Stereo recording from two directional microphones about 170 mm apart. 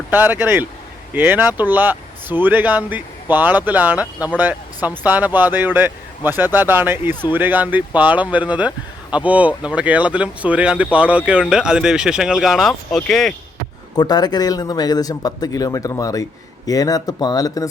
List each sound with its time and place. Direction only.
0.1 s speech: 10° right (ahead or behind); by 13.3 s 5° left (ahead or behind)
13.9 s a man's voice: 25° left (ahead or behind)